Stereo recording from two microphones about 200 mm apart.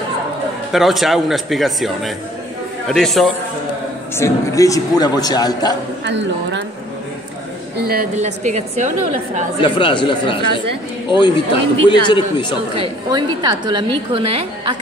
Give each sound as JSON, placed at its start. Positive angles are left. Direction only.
{"t": 0.7, "sound": "a man's voice", "side_deg": 0}
{"t": 4.2, "sound": "a man's voice", "side_deg": 15}
{"t": 6.0, "sound": "a woman's voice", "side_deg": -65}
{"t": 7.7, "sound": "speech", "side_deg": -50}
{"t": 8.2, "sound": "a woman's voice", "side_deg": -35}
{"t": 9.6, "sound": "a man's voice", "side_deg": 25}
{"t": 13.1, "sound": "a woman's voice", "side_deg": -20}